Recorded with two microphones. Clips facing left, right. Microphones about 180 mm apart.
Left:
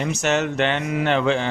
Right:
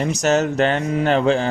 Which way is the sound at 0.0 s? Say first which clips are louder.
Right 4 dB; 40° right (ahead or behind).